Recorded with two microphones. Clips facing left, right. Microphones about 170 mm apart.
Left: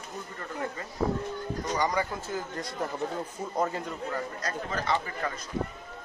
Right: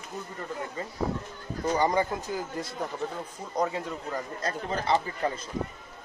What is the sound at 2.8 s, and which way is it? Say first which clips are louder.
Speech: left 3 dB; centre (ahead or behind).